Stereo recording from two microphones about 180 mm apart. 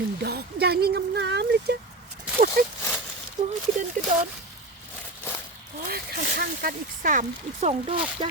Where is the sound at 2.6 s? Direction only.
50° right (ahead or behind).